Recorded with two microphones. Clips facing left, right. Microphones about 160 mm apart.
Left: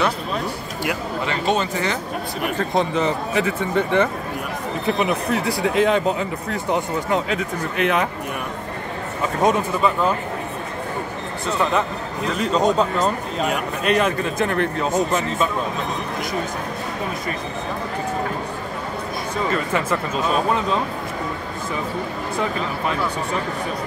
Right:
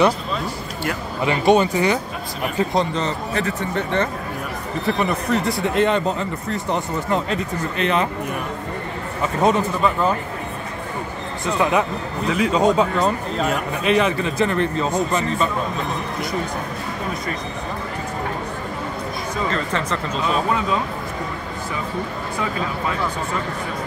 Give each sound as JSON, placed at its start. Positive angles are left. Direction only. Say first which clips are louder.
{"t": 1.2, "sound": "speech", "louder": "right 7 dB", "side_deg": -15}
{"t": 2.7, "sound": "speech", "louder": "left 1 dB", "side_deg": 5}
{"t": 4.8, "sound": "speech", "louder": "even", "side_deg": 5}
{"t": 9.4, "sound": "speech", "louder": "even", "side_deg": 0}
{"t": 11.5, "sound": "speech", "louder": "right 2 dB", "side_deg": -10}
{"t": 19.5, "sound": "speech", "louder": "left 2 dB", "side_deg": 10}